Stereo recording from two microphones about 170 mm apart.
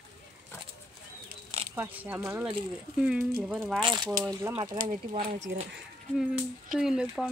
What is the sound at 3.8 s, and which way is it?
Speech, 25° right (ahead or behind).